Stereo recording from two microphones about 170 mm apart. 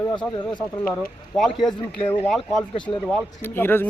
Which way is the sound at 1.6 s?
5° left (ahead or behind).